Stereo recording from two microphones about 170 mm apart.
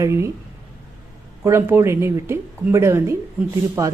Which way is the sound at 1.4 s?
15° right (ahead or behind).